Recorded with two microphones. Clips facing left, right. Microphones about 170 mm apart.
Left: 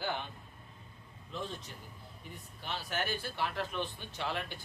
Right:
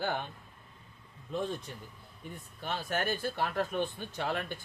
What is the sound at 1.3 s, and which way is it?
Speech, 50° right (ahead or behind).